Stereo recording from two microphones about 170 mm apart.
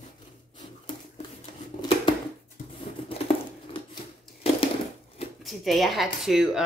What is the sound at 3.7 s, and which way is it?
Scissors, 30° left (ahead or behind).